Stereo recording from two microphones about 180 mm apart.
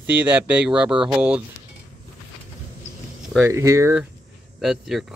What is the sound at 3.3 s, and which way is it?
Speech, 15° right (ahead or behind).